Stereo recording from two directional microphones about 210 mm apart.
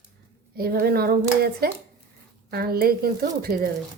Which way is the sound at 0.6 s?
45° right (ahead or behind).